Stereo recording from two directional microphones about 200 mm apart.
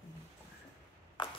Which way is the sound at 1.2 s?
25° left (ahead or behind).